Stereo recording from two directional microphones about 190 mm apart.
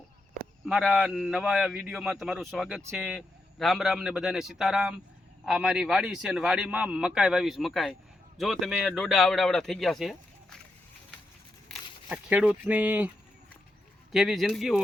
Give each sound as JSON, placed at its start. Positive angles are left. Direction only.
{"t": 0.6, "sound": "a man's voice", "side_deg": 0}
{"t": 11.7, "sound": "speech", "side_deg": -5}
{"t": 14.1, "sound": "a man's voice", "side_deg": 0}